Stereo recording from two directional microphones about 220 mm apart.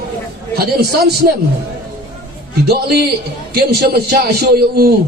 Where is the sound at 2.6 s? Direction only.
45° right (ahead or behind).